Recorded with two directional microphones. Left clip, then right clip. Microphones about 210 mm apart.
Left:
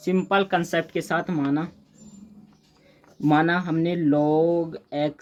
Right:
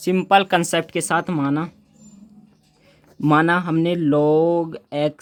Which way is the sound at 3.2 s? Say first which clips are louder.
Right 4 dB; 50° right (ahead or behind).